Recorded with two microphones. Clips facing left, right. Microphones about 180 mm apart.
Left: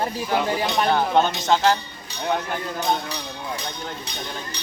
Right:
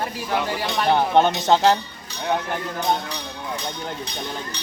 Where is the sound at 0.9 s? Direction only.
20° right (ahead or behind).